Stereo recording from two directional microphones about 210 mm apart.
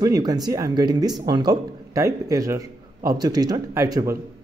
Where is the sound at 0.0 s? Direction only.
15° right (ahead or behind).